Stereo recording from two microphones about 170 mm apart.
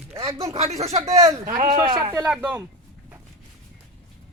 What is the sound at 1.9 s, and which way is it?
Speech, 30° right (ahead or behind).